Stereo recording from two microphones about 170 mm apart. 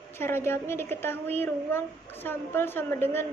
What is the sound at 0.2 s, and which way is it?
A woman's voice, 15° left (ahead or behind).